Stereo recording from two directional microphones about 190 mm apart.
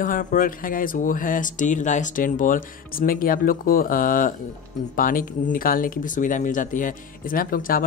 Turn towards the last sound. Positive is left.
turn(degrees=50)  # may be behind; listen again after turning